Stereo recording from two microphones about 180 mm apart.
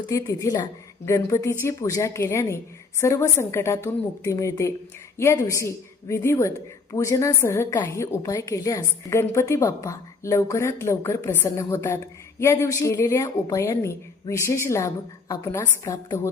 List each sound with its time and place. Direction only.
0.1 s a woman's voice: 20° left (ahead or behind)